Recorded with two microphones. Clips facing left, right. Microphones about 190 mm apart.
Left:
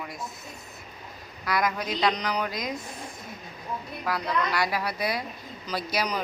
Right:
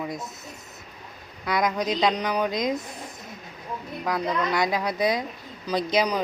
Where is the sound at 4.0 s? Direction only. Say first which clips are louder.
Right 3 dB; 20° right (ahead or behind).